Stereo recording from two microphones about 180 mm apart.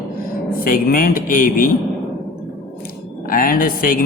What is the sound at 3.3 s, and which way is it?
Speech, 50° left (ahead or behind).